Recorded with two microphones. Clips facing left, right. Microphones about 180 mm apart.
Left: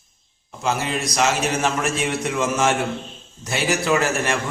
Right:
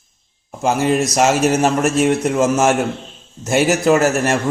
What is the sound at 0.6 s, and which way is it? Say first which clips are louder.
A man's voice: right 8 dB; 50° right (ahead or behind).